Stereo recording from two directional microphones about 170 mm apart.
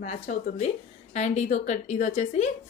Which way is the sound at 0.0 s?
40° left (ahead or behind).